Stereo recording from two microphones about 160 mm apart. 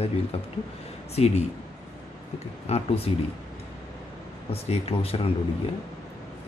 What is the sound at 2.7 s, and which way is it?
Speech, 40° left (ahead or behind).